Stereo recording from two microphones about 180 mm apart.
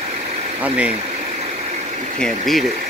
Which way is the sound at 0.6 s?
5° right (ahead or behind).